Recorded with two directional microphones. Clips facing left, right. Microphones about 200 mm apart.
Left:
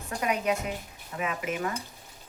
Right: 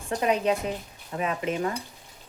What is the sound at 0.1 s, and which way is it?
Speech, 30° right (ahead or behind).